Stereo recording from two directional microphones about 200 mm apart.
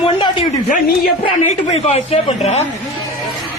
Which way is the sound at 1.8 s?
30° left (ahead or behind).